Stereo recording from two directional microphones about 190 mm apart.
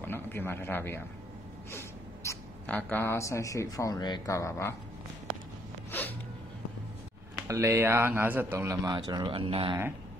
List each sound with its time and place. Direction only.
0.0 s a man's voice: 10° left (ahead or behind)
5.9 s a sound: 10° left (ahead or behind)
7.3 s a man's voice: 15° right (ahead or behind)